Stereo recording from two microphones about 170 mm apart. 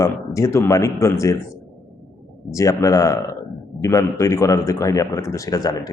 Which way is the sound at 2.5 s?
20° left (ahead or behind).